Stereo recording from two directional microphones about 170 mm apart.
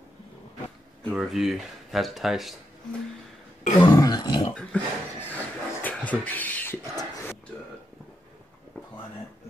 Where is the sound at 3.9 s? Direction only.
25° left (ahead or behind).